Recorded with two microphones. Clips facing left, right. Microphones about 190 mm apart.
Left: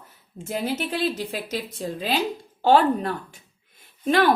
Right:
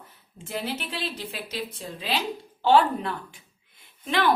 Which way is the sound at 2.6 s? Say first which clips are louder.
Left 2 dB; 40° left (ahead or behind).